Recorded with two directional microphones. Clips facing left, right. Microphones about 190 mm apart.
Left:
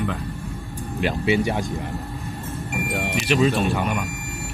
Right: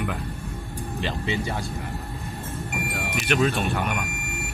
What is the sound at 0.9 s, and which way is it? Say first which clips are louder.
Speech: left 7 dB; 15° left (ahead or behind).